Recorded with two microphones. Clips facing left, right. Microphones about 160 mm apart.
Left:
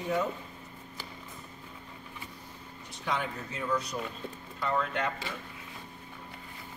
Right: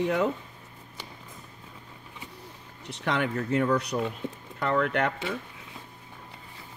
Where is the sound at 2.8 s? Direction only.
75° right (ahead or behind).